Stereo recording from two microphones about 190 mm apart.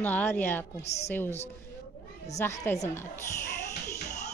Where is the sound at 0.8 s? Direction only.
35° left (ahead or behind).